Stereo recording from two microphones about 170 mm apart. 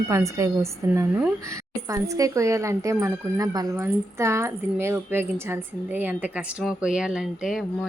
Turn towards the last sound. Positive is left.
turn(degrees=0)  # may be behind; listen again after turning